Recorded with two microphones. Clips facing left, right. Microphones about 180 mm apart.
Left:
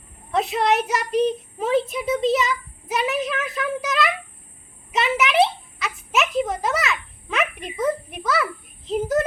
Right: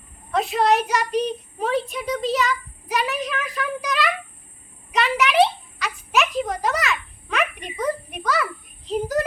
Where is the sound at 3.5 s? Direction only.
25° left (ahead or behind).